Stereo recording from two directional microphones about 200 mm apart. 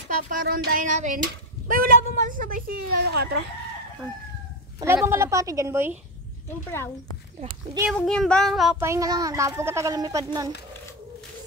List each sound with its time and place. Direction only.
0.3 s a woman's voice: 45° right (ahead or behind)
4.7 s a child's voice: 15° right (ahead or behind)
6.7 s speech: 15° left (ahead or behind)
7.9 s a sound: 5° left (ahead or behind)
8.7 s a child's voice: 15° right (ahead or behind)